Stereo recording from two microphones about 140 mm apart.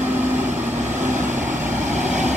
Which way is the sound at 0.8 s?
55° right (ahead or behind).